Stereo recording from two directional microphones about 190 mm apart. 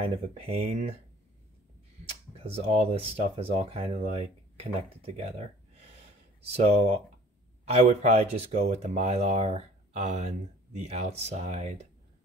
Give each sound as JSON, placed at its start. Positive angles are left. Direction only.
{"t": 0.4, "sound": "speech", "side_deg": -30}
{"t": 2.3, "sound": "speech", "side_deg": -30}
{"t": 6.4, "sound": "speech", "side_deg": -35}